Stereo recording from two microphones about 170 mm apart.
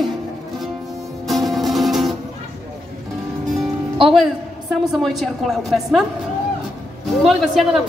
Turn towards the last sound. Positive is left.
turn(degrees=0)  # may be behind; listen again after turning